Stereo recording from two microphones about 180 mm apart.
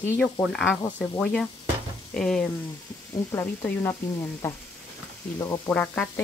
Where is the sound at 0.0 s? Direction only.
15° left (ahead or behind).